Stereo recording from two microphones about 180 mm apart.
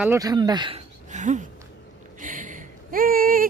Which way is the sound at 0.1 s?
20° right (ahead or behind).